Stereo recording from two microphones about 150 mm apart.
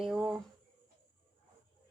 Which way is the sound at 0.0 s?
5° right (ahead or behind).